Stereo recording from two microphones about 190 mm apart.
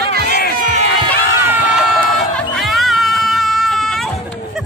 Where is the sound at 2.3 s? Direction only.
Centre (ahead or behind).